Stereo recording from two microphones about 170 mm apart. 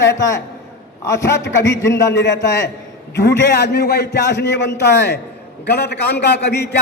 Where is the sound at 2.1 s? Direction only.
90° left.